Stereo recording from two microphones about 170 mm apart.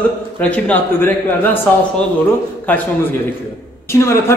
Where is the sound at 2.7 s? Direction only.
10° left (ahead or behind).